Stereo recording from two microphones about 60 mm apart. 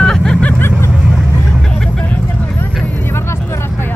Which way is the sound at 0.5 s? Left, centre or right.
Left.